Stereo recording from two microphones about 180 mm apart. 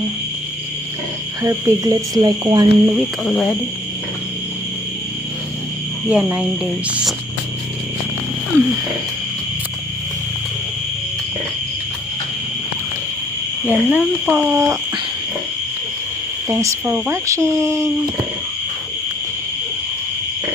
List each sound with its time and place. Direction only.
1.4 s speech: 20° right (ahead or behind)
2.9 s speech: centre (ahead or behind)
6.1 s speech: 10° right (ahead or behind)
8.5 s wild animals: 15° right (ahead or behind)
13.7 s speech: 10° right (ahead or behind)
16.5 s speech: 15° right (ahead or behind)